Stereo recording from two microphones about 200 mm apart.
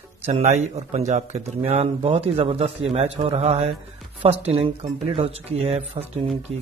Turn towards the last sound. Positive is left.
turn(degrees=-30)  # may be behind; listen again after turning